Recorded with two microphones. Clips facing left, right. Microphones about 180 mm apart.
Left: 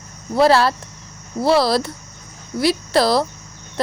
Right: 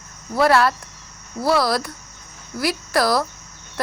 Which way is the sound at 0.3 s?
30° left (ahead or behind).